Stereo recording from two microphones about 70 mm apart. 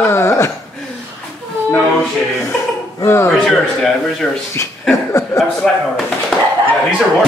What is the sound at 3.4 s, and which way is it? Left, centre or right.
Speech, centre.